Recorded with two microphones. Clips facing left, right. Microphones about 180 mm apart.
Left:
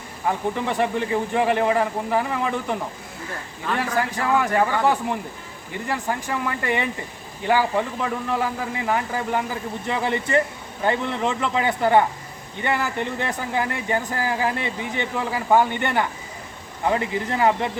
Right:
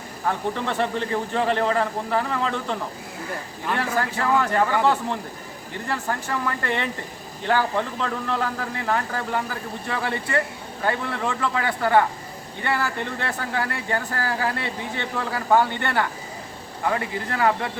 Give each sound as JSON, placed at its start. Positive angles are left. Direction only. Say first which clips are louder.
{"t": 0.3, "sound": "speech", "louder": "left 2 dB", "side_deg": 15}
{"t": 3.8, "sound": "speech", "louder": "left 1 dB", "side_deg": 15}